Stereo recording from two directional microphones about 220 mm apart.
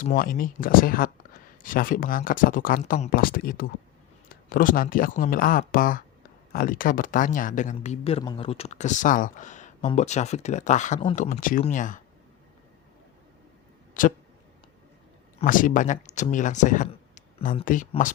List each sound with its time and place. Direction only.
0.0 s speech: 40° left (ahead or behind)
14.0 s speech: 40° left (ahead or behind)
15.4 s speech: 40° left (ahead or behind)